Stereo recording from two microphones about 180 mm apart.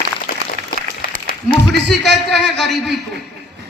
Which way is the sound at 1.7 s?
70° right (ahead or behind).